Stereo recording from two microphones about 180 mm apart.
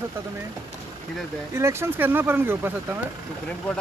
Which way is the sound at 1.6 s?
15° right (ahead or behind).